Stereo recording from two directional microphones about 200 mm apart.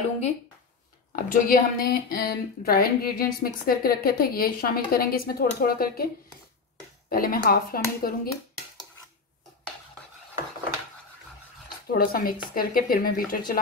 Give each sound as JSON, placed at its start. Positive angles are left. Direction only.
{"t": 1.1, "sound": "speech", "side_deg": 45}
{"t": 7.1, "sound": "speech", "side_deg": 45}
{"t": 11.9, "sound": "speech", "side_deg": 45}